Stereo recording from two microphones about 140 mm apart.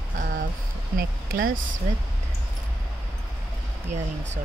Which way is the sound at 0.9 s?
90° right.